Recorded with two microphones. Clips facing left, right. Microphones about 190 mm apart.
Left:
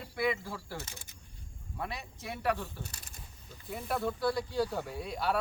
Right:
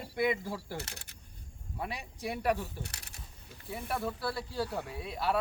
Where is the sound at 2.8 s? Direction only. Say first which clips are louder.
Right 1 dB; 70° right (ahead or behind).